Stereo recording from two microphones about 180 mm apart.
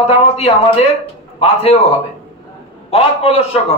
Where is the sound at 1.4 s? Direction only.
35° left (ahead or behind).